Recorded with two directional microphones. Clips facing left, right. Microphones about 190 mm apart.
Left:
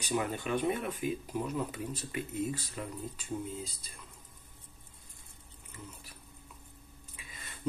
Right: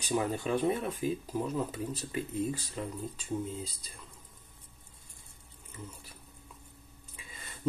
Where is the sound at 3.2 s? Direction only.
30° right (ahead or behind).